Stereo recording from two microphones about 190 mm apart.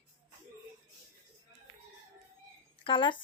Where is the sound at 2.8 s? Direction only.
25° left (ahead or behind).